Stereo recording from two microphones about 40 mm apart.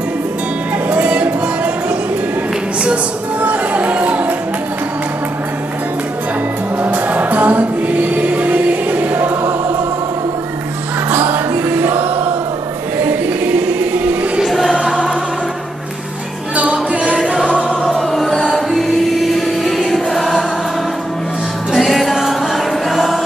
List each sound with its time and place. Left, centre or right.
1.0 s music: right
3.3 s chatter: right
6.8 s music: right
11.1 s music: right
14.4 s choir: centre
16.9 s music: right
17.2 s music: centre
17.5 s music: left
17.8 s music: centre
19.9 s choir: centre
21.7 s music: centre